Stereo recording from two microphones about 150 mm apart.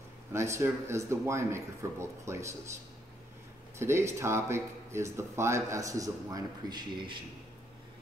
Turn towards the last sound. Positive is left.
turn(degrees=-35)  # may be behind; listen again after turning